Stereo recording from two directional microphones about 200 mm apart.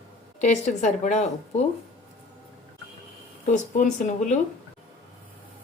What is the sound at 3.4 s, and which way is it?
Speech, 40° left (ahead or behind).